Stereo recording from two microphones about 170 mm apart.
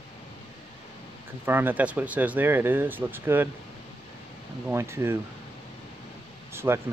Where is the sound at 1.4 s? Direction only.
10° right (ahead or behind).